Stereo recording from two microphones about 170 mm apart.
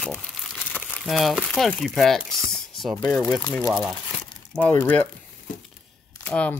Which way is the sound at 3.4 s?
20° left (ahead or behind).